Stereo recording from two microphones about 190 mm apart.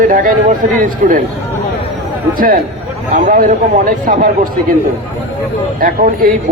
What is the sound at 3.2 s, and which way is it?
A man's voice, 45° right (ahead or behind).